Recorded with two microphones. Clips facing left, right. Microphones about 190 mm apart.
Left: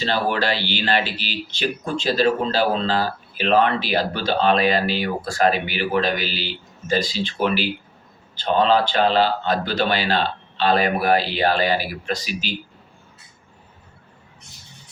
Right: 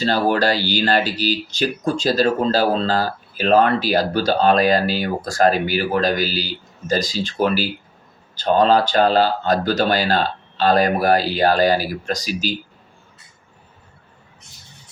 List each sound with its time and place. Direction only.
0.0 s speech: 40° right (ahead or behind)